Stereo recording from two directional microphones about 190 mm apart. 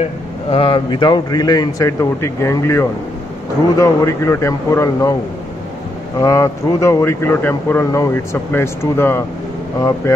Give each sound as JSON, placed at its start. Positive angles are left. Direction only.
{"t": 0.5, "sound": "speech", "side_deg": 30}
{"t": 6.1, "sound": "speech", "side_deg": 15}